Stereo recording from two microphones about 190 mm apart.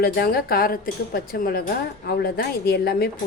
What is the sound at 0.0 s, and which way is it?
A woman's voice, 55° left (ahead or behind).